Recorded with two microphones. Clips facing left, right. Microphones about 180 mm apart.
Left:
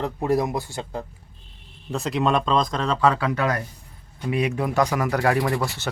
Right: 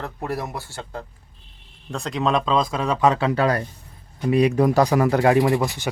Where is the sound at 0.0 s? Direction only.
15° left (ahead or behind).